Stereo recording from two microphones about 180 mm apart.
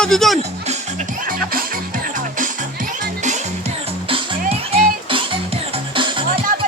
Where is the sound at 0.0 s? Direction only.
Centre (ahead or behind).